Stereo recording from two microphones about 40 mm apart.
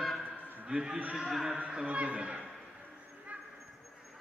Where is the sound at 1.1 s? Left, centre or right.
Centre.